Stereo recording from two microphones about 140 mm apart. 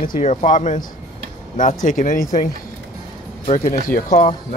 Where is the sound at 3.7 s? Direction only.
90° left.